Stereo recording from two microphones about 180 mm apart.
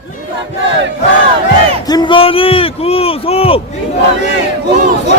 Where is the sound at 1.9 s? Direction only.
25° left (ahead or behind).